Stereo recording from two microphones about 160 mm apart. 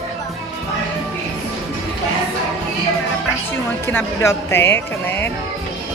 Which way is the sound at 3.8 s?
15° left (ahead or behind).